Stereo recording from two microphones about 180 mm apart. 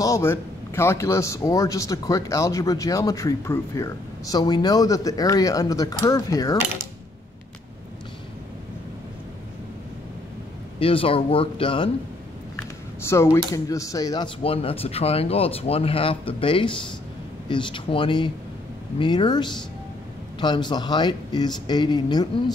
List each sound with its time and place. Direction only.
0.0 s a man's voice: 15° left (ahead or behind)
10.8 s speech: 30° left (ahead or behind)
13.0 s a man's voice: 15° left (ahead or behind)